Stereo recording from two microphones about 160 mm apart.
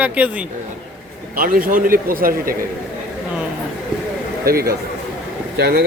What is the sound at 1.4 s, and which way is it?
A man's voice, 60° right (ahead or behind).